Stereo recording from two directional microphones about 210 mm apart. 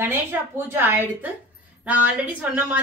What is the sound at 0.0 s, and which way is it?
A woman's voice, 10° right (ahead or behind).